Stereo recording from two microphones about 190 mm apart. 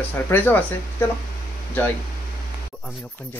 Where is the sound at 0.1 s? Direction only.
10° left (ahead or behind).